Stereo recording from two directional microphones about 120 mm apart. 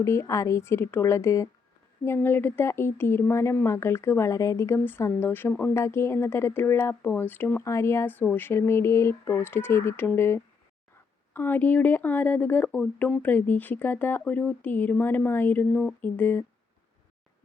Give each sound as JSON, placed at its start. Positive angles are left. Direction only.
{"t": 0.0, "sound": "speech", "side_deg": 25}